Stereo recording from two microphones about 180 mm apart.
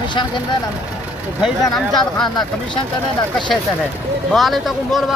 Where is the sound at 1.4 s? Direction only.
Centre (ahead or behind).